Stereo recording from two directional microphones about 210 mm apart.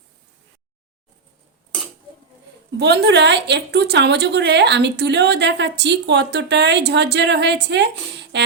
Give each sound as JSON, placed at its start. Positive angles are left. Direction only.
{"t": 2.7, "sound": "a woman's voice", "side_deg": -55}